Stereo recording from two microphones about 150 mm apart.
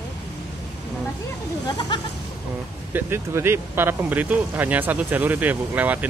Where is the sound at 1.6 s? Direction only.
30° left (ahead or behind).